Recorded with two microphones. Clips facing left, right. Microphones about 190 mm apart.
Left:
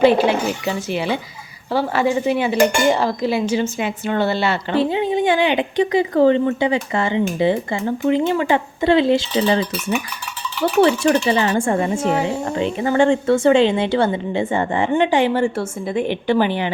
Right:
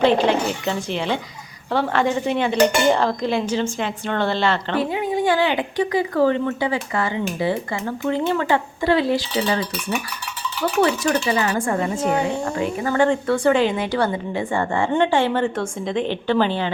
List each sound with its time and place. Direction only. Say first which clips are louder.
0.0 s speech: left 3 dB; 10° left (ahead or behind)
1.7 s dishes: left 2 dB; 5° left (ahead or behind)
3.5 s speech: left 2 dB; 10° left (ahead or behind)
4.7 s a woman's voice: left 4 dB; 25° left (ahead or behind)
10.8 s a woman's voice: left 5 dB; 30° left (ahead or behind)